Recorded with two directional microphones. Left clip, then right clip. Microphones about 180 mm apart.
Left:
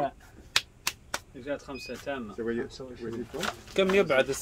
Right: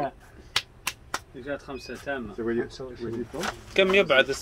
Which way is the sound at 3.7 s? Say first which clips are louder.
Right 4 dB; 55° left (ahead or behind).